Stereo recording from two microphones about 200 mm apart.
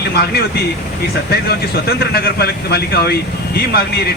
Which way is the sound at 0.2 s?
50° left (ahead or behind).